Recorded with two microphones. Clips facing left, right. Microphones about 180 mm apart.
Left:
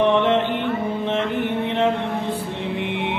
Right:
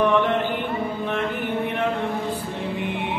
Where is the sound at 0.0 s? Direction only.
25° left (ahead or behind).